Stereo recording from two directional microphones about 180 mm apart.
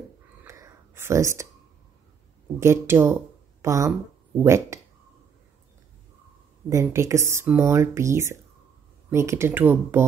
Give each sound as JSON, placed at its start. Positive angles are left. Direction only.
{"t": 0.4, "sound": "whispering", "side_deg": -15}
{"t": 2.6, "sound": "speech", "side_deg": -15}
{"t": 6.7, "sound": "speech", "side_deg": -15}